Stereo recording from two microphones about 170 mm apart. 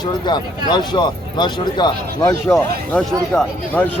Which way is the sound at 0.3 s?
25° left (ahead or behind).